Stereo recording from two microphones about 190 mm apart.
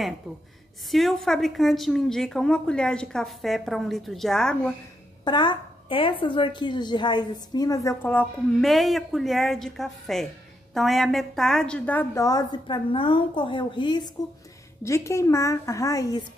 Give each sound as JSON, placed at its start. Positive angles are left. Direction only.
{"t": 0.9, "sound": "a woman's voice", "side_deg": 0}
{"t": 5.2, "sound": "a woman's voice", "side_deg": 25}